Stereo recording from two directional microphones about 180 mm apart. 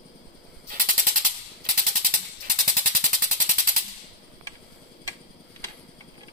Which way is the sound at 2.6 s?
50° right (ahead or behind).